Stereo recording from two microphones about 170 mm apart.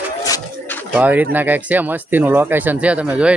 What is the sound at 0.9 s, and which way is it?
Speech, 10° right (ahead or behind).